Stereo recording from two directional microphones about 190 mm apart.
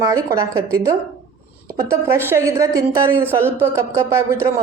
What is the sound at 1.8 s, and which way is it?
Speech, 15° right (ahead or behind).